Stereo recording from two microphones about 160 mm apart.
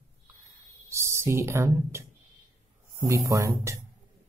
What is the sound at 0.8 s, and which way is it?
Speech, 15° right (ahead or behind).